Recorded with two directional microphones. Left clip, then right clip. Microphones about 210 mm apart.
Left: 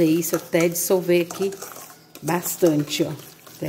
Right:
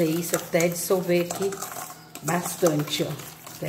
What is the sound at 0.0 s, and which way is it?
Speech, 50° left (ahead or behind).